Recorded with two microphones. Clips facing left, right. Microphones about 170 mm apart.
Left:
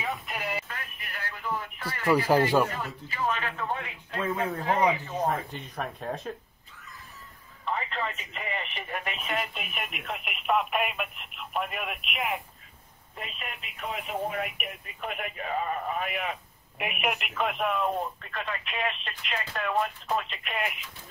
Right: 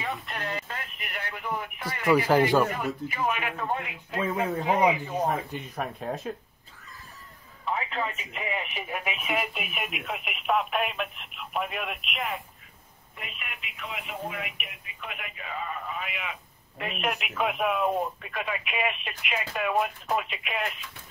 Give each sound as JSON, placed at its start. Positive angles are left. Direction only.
{"t": 0.0, "sound": "telephone", "side_deg": 5}
{"t": 0.7, "sound": "speech", "side_deg": -20}
{"t": 4.4, "sound": "speech", "side_deg": 0}
{"t": 4.6, "sound": "speech", "side_deg": -10}
{"t": 7.7, "sound": "speech", "side_deg": -5}
{"t": 13.2, "sound": "speech", "side_deg": 35}
{"t": 16.7, "sound": "speech", "side_deg": 15}
{"t": 17.0, "sound": "speech", "side_deg": 0}